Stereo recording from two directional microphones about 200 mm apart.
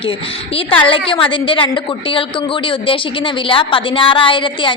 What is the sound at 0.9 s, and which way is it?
A woman's voice, 25° left (ahead or behind).